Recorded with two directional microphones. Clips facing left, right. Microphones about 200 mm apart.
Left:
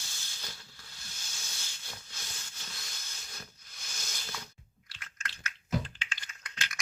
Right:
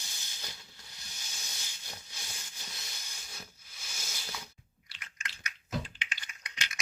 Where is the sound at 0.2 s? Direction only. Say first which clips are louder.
Even; 15° right (ahead or behind).